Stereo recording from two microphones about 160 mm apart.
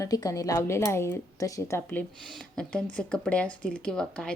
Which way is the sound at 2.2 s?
5° left (ahead or behind).